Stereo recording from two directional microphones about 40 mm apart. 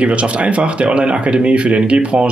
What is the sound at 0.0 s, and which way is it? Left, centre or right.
Speech, right.